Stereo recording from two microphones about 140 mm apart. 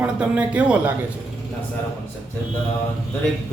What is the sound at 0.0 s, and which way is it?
Speech, 10° right (ahead or behind).